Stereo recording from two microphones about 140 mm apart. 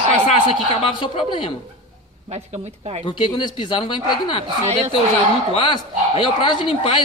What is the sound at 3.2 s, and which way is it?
Speech, 35° left (ahead or behind).